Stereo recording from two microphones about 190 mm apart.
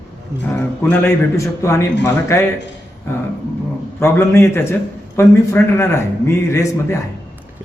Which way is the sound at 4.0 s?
15° left (ahead or behind).